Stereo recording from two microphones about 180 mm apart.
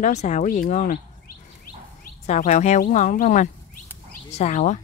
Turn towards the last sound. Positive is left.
turn(degrees=40)  # may be behind; listen again after turning